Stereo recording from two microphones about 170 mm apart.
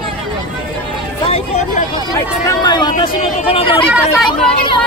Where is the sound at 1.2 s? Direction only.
40° left (ahead or behind).